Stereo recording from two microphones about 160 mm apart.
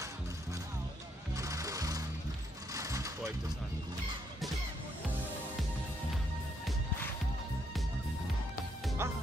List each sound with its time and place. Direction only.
1.3 s music: 20° right (ahead or behind)
2.7 s mechanisms: 20° right (ahead or behind)
9.0 s music: 15° right (ahead or behind)